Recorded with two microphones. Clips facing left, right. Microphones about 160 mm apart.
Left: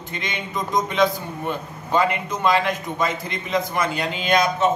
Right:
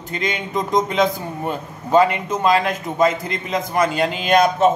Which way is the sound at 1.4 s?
40° right (ahead or behind).